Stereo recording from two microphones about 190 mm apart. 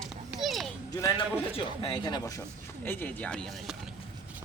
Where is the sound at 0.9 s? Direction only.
20° left (ahead or behind).